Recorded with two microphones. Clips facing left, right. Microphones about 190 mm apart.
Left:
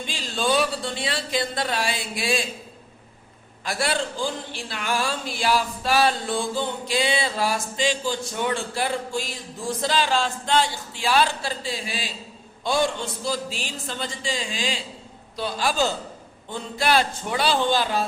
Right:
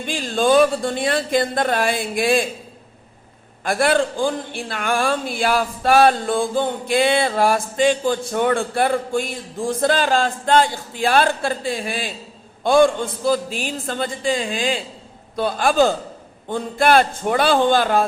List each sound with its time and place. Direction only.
0.0 s a man's voice: 50° right (ahead or behind)
3.6 s a man's voice: 55° right (ahead or behind)